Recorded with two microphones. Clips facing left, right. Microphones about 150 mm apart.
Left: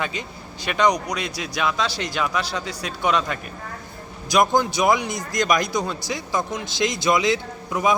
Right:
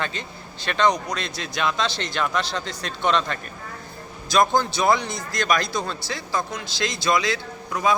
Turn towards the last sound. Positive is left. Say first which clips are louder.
# left 1 dB
turn(degrees=20)  # may be behind; listen again after turning